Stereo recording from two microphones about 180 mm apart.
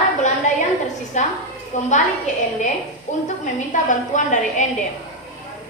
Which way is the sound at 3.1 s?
40° left (ahead or behind).